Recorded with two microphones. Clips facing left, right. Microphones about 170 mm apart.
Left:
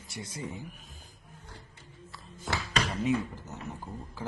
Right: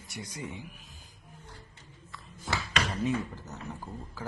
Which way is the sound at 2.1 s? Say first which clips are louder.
Even; 25° left (ahead or behind).